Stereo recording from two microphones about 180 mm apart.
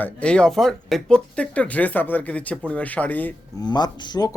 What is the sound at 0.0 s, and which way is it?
Speech, 5° left (ahead or behind).